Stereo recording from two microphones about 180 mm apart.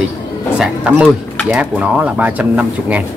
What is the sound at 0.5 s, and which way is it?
Speech, 5° right (ahead or behind).